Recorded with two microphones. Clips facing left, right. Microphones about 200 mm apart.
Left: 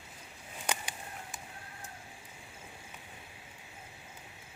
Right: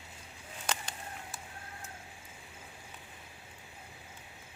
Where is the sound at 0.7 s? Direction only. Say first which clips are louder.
Left 1 dB; 10° left (ahead or behind).